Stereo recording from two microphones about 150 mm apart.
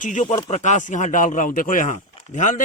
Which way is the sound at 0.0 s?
55° left (ahead or behind).